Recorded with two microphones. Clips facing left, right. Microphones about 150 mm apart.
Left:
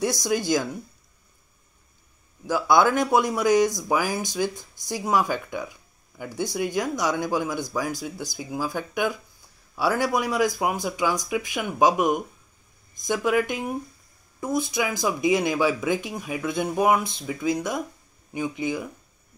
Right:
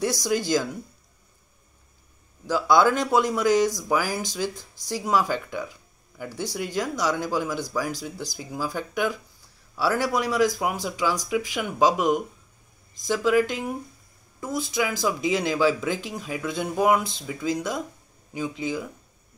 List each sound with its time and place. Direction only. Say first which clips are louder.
0.0 s speech: even; 15° left (ahead or behind)
2.4 s speech: even; 15° left (ahead or behind)